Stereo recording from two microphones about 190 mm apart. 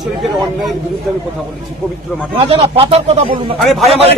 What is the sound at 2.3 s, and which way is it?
Speech, 30° right (ahead or behind).